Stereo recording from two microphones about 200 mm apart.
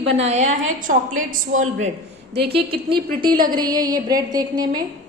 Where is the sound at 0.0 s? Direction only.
35° right (ahead or behind).